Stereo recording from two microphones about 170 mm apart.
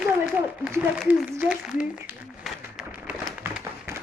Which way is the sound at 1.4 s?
5° right (ahead or behind).